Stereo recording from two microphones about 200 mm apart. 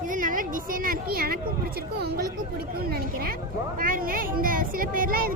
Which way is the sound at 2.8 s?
50° right (ahead or behind).